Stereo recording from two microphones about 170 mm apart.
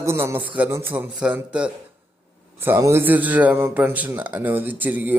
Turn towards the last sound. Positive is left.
turn(degrees=-10)  # may be behind; listen again after turning